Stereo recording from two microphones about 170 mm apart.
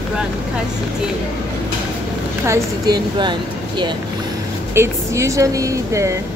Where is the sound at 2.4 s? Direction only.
20° right (ahead or behind).